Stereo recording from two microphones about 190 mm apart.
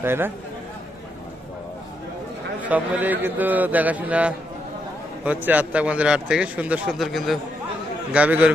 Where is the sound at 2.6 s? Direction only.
10° right (ahead or behind).